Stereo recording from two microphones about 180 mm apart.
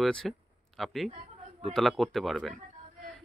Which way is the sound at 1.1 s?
35° right (ahead or behind).